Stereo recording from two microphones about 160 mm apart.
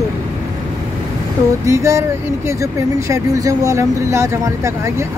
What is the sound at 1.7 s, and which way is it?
Speech, 20° right (ahead or behind).